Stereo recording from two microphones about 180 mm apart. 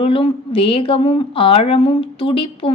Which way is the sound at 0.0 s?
30° left (ahead or behind).